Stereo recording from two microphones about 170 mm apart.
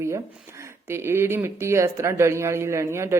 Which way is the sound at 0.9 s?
15° right (ahead or behind).